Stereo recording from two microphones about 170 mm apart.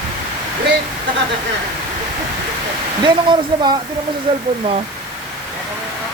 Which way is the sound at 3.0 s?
25° right (ahead or behind).